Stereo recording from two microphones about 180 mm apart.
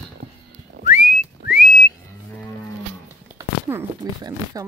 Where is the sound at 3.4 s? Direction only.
15° right (ahead or behind).